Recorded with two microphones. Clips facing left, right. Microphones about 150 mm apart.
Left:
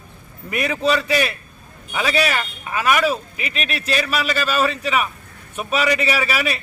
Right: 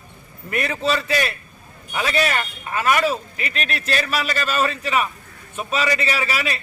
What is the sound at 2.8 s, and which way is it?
Speech, 15° left (ahead or behind).